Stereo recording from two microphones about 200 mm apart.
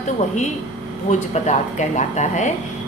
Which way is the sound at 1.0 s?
35° left (ahead or behind).